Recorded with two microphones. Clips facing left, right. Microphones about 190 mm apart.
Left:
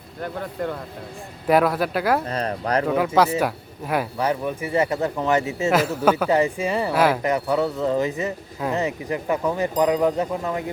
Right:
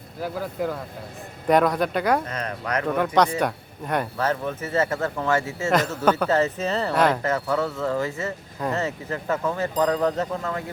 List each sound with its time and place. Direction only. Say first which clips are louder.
0.2 s speech: right 1 dB; 5° right (ahead or behind)
2.2 s speech: left 5 dB; 35° left (ahead or behind)
3.3 s speech: left 2 dB; 5° left (ahead or behind)